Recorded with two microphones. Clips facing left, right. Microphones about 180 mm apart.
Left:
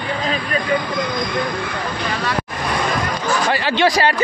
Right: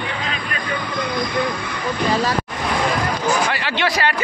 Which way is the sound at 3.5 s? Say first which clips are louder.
Left 5 dB; 40° left (ahead or behind).